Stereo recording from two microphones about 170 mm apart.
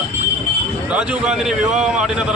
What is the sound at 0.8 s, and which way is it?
Speech, 5° right (ahead or behind).